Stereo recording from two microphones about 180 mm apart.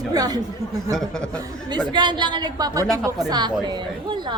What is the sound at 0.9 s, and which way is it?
Speech, centre (ahead or behind).